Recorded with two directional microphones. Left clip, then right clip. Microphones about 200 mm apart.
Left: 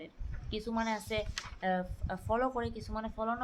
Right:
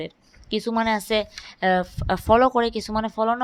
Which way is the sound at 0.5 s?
50° right (ahead or behind).